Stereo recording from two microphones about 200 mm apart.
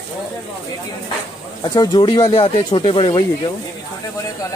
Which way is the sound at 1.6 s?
20° left (ahead or behind).